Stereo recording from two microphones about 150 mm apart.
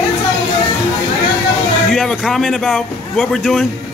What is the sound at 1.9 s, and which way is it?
A man's voice, centre (ahead or behind).